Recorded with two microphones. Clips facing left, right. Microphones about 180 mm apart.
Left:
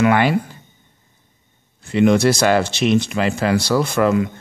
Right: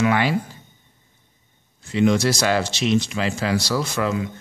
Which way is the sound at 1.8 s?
60° left (ahead or behind).